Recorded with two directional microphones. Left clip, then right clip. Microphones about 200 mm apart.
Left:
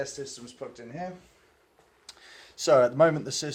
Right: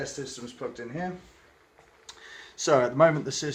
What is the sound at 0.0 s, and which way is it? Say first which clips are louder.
Speech: even; 55° left (ahead or behind).